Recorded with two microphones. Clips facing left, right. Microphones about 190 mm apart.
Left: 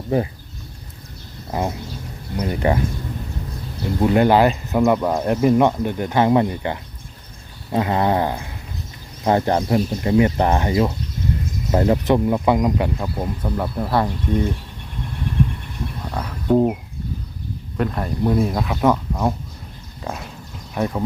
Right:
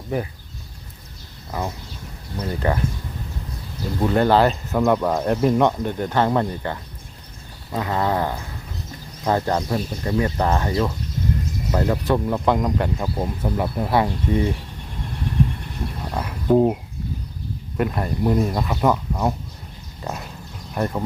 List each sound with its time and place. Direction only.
1.5 s speech: 20° left (ahead or behind)
4.0 s speech: 10° left (ahead or behind)
12.2 s speech: 5° left (ahead or behind)
13.1 s speech: 5° right (ahead or behind)
16.1 s speech: 5° right (ahead or behind)
17.7 s speech: 5° right (ahead or behind)
20.0 s a sound: centre (ahead or behind)
20.7 s speech: centre (ahead or behind)